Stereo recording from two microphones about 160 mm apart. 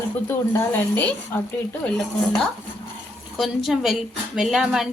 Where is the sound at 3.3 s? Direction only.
Centre (ahead or behind).